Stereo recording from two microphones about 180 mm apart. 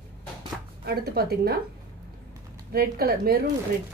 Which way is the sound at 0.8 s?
60° right (ahead or behind).